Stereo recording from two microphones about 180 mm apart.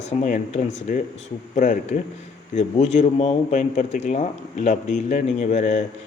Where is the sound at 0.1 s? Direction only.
40° left (ahead or behind).